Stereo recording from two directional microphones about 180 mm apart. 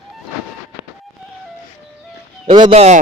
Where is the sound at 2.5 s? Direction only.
30° right (ahead or behind).